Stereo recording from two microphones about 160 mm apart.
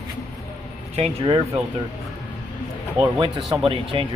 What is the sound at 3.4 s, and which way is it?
Speech, centre (ahead or behind).